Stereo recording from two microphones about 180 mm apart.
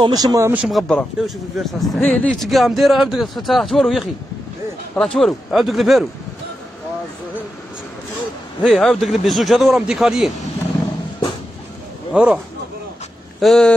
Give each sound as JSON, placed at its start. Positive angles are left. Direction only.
{"t": 0.0, "sound": "speech", "side_deg": -20}
{"t": 0.7, "sound": "a man's voice", "side_deg": 0}
{"t": 8.6, "sound": "a man's voice", "side_deg": 0}
{"t": 12.1, "sound": "speech", "side_deg": -5}
{"t": 13.4, "sound": "a man's voice", "side_deg": 5}